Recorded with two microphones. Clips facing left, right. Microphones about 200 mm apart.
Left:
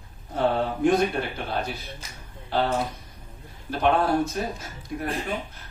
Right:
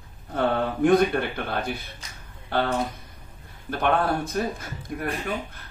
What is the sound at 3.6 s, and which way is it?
Speech, 55° right (ahead or behind).